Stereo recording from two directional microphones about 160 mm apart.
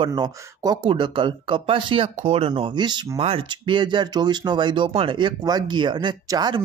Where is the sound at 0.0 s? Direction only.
30° right (ahead or behind).